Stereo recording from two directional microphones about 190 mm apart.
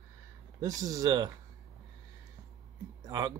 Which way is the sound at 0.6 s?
20° right (ahead or behind).